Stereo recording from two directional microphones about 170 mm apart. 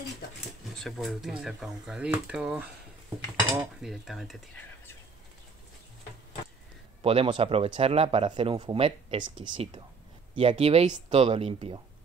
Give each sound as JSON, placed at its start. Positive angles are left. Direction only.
{"t": 0.7, "sound": "speech", "side_deg": 0}
{"t": 7.0, "sound": "speech", "side_deg": -35}